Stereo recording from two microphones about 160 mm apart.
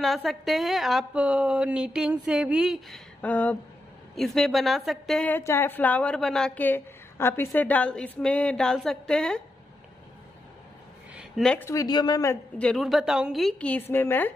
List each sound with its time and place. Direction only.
0.0 s a woman's voice: centre (ahead or behind)
3.2 s a woman's voice: 10° left (ahead or behind)
11.1 s a sound: centre (ahead or behind)
11.6 s speech: 20° left (ahead or behind)
12.5 s a woman's voice: 5° left (ahead or behind)